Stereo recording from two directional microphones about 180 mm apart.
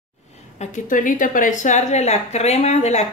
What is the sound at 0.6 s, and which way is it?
A woman's voice, 45° left (ahead or behind).